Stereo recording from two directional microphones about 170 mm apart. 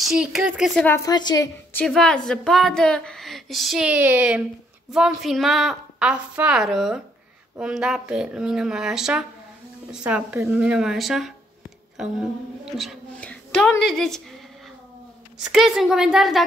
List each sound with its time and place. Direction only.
0.0 s a woman's voice: 5° right (ahead or behind)
0.7 s a woman's voice: 10° left (ahead or behind)
1.0 s a woman's voice: 25° left (ahead or behind)
1.8 s a woman's voice: 5° left (ahead or behind)
12.7 s a woman's voice: 5° left (ahead or behind)
15.3 s a woman's voice: 5° right (ahead or behind)